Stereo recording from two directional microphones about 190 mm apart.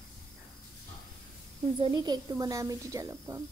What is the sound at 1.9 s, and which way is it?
A woman's voice, 20° right (ahead or behind).